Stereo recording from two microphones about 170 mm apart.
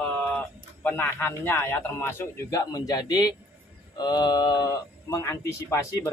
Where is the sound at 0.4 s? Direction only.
10° left (ahead or behind).